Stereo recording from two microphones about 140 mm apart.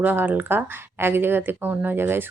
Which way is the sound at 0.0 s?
10° right (ahead or behind).